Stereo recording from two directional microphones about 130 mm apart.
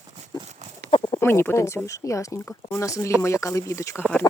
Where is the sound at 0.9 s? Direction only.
40° left (ahead or behind).